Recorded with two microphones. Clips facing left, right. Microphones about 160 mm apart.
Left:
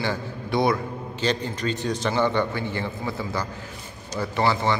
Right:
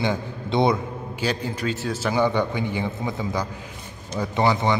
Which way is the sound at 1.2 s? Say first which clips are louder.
Even; 10° right (ahead or behind).